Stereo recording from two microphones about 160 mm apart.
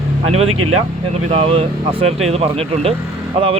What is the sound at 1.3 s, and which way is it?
Speech, 35° right (ahead or behind).